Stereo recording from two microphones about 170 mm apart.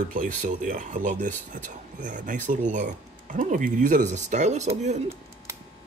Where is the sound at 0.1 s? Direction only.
50° right (ahead or behind).